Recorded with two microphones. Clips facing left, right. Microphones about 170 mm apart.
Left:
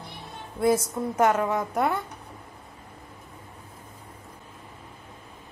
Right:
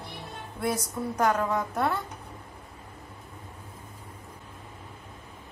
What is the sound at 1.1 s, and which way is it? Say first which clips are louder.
Speech: left 3 dB; 20° left (ahead or behind).